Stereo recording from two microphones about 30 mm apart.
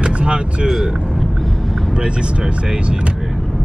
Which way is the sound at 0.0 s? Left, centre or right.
Right.